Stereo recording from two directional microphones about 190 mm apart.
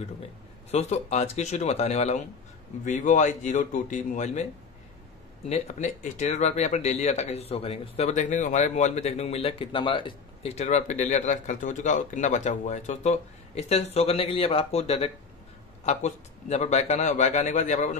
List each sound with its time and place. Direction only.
0.7 s speech: 35° left (ahead or behind)
5.5 s speech: 40° left (ahead or behind)